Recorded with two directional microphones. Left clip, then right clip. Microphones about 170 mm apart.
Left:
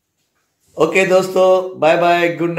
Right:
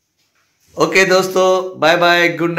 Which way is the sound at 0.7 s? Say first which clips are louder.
Right 1 dB; centre (ahead or behind).